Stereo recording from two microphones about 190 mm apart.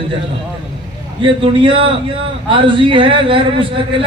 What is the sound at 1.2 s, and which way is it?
A man's voice, 25° right (ahead or behind).